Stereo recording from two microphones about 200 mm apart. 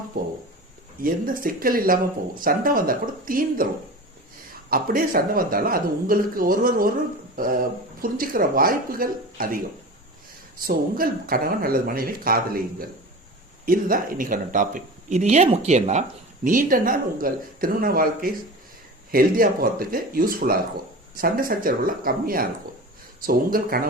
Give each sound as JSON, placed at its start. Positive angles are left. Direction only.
{"t": 1.0, "sound": "a man's voice", "side_deg": -45}
{"t": 4.7, "sound": "a man's voice", "side_deg": -45}
{"t": 10.6, "sound": "a man's voice", "side_deg": -45}
{"t": 13.7, "sound": "a man's voice", "side_deg": -45}